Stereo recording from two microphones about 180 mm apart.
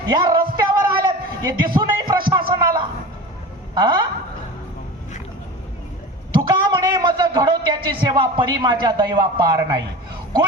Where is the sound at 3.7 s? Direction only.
25° right (ahead or behind).